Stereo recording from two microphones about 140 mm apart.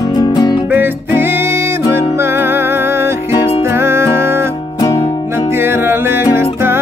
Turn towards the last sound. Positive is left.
turn(degrees=-15)  # may be behind; listen again after turning